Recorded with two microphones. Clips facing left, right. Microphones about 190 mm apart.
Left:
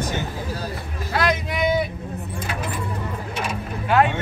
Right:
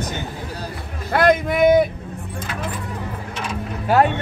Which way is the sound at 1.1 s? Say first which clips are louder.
Right 7 dB; 55° right (ahead or behind).